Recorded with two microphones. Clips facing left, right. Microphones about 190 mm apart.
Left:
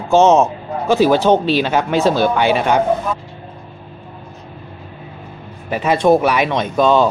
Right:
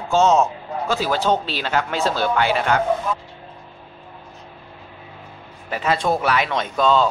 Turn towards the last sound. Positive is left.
turn(degrees=15)  # may be behind; listen again after turning